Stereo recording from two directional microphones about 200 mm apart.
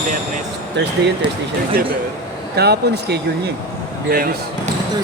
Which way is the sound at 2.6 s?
55° right (ahead or behind).